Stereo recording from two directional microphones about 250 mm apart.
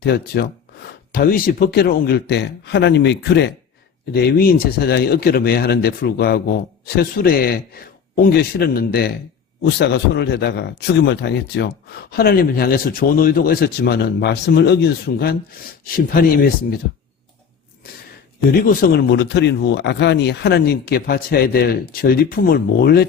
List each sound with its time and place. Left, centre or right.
0.0 s a man's voice: left
18.7 s a man's voice: left